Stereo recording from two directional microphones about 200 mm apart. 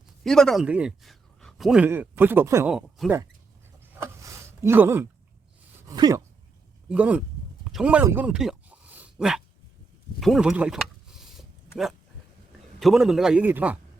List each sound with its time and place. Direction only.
0.2 s a man's voice: centre (ahead or behind)
2.7 s speech: centre (ahead or behind)
3.9 s a sound: 15° right (ahead or behind)
5.9 s speech: 20° right (ahead or behind)
6.8 s a sound: 5° right (ahead or behind)
12.8 s a man's voice: centre (ahead or behind)